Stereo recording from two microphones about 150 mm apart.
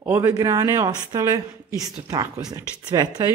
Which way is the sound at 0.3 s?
25° right (ahead or behind).